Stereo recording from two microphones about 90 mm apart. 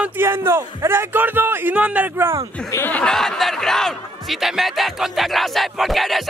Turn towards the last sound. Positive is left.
turn(degrees=0)  # may be behind; listen again after turning